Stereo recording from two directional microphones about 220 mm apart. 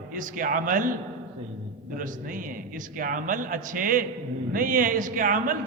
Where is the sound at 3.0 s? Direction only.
40° right (ahead or behind).